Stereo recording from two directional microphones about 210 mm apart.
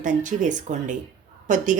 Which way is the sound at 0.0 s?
35° right (ahead or behind).